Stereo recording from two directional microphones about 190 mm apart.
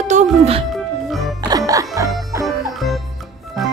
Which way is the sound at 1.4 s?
20° right (ahead or behind).